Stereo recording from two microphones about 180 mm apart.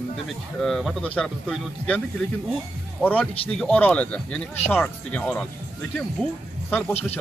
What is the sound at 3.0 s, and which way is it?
Speech, 10° left (ahead or behind).